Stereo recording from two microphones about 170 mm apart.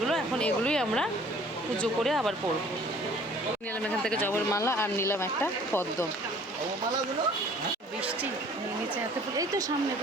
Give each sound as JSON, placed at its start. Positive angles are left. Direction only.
{"t": 0.0, "sound": "a sound", "side_deg": 5}
{"t": 1.8, "sound": "speech", "side_deg": 0}
{"t": 4.0, "sound": "speech", "side_deg": 10}
{"t": 9.4, "sound": "speech", "side_deg": -20}